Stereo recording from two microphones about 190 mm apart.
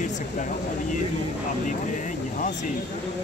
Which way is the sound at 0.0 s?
40° left (ahead or behind).